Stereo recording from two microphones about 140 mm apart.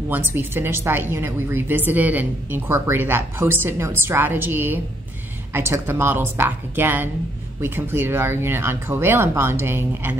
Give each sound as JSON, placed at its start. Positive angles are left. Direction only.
{"t": 0.1, "sound": "a woman's voice", "side_deg": -15}